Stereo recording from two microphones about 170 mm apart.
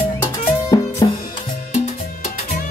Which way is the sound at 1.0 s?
25° left (ahead or behind).